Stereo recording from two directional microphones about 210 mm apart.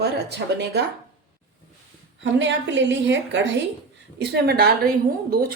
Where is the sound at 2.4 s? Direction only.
60° right (ahead or behind).